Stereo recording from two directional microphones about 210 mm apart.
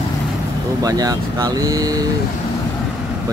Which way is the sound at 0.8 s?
15° right (ahead or behind).